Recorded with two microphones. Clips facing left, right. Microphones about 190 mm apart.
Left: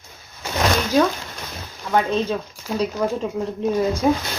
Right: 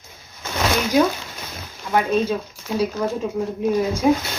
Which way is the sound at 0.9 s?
10° right (ahead or behind).